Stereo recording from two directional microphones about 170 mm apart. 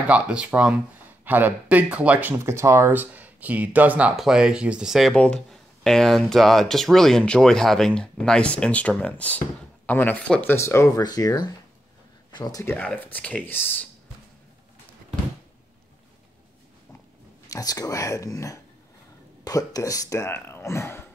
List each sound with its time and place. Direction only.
0.1 s speech: 5° right (ahead or behind); by 12.7 s 20° left (ahead or behind)
12.7 s speech: 10° left (ahead or behind)
17.5 s speech: 20° left (ahead or behind)